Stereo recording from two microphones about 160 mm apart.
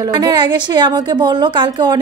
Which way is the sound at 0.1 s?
25° right (ahead or behind).